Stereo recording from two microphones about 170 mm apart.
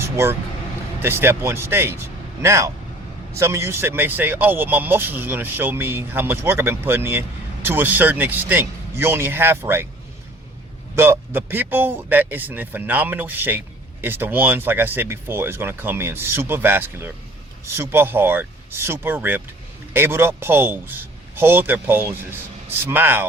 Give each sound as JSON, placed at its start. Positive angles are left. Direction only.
{"t": 0.0, "sound": "speech", "side_deg": -15}
{"t": 10.9, "sound": "speech", "side_deg": -15}